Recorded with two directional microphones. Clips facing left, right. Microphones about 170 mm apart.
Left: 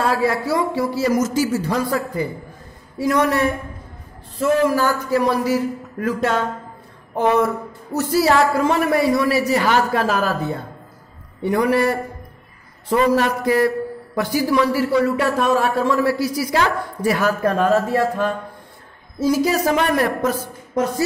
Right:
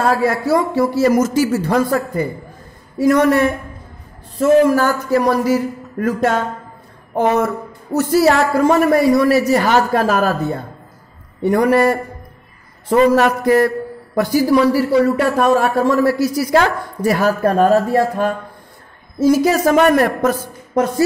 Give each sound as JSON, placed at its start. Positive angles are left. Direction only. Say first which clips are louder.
{"t": 0.0, "sound": "a man's voice", "louder": "right 3 dB", "side_deg": -45}
{"t": 11.4, "sound": "a man's voice", "louder": "right 4 dB", "side_deg": -45}